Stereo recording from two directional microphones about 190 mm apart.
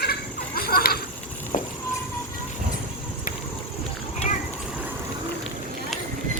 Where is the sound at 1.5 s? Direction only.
45° left (ahead or behind).